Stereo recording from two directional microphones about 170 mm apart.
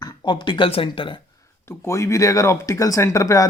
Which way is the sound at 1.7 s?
15° left (ahead or behind).